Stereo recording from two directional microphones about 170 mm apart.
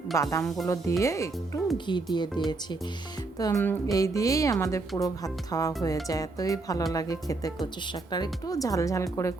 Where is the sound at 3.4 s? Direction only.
15° left (ahead or behind).